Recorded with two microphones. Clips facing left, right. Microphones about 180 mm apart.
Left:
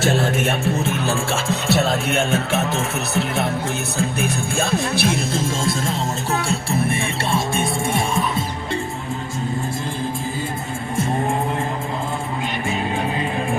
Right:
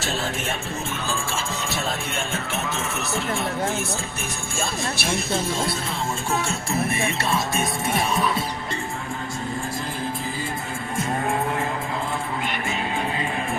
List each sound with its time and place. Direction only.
0.0 s music: 55° left (ahead or behind)
3.9 s music: 65° left (ahead or behind)
6.5 s music: 30° left (ahead or behind)